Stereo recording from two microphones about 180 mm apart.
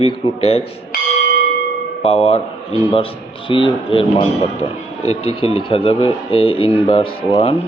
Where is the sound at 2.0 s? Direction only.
35° left (ahead or behind).